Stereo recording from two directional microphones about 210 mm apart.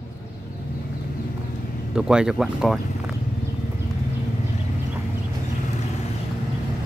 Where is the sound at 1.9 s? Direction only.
5° right (ahead or behind).